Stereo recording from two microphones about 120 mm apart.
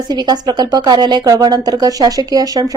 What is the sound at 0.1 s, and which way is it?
Speech, 35° right (ahead or behind).